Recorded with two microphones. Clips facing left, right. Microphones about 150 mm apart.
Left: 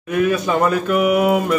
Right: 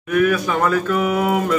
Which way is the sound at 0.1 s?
25° left (ahead or behind).